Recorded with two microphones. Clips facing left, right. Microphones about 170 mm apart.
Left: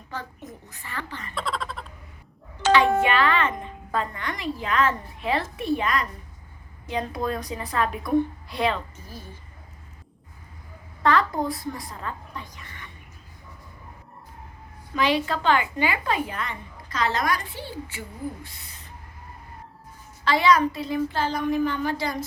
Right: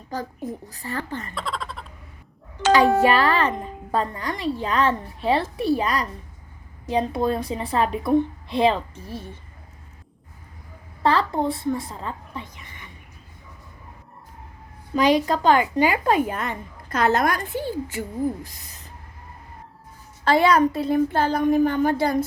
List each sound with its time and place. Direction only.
0.1 s a woman's voice: 40° right (ahead or behind)
1.4 s a sound: centre (ahead or behind)
3.0 s a woman's voice: 40° right (ahead or behind)
11.0 s a woman's voice: 30° right (ahead or behind)
14.9 s a woman's voice: 40° right (ahead or behind)
20.2 s a woman's voice: 50° right (ahead or behind)